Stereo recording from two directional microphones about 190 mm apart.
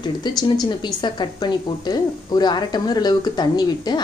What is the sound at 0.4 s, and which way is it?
A woman's voice, 20° left (ahead or behind).